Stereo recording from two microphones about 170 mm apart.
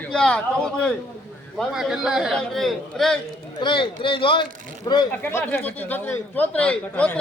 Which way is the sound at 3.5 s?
30° left (ahead or behind).